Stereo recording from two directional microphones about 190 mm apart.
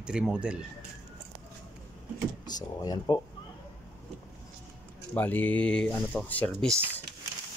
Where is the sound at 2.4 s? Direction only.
20° left (ahead or behind).